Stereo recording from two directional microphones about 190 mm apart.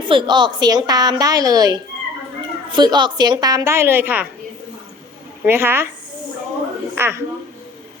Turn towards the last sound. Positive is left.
turn(degrees=-10)  # may be behind; listen again after turning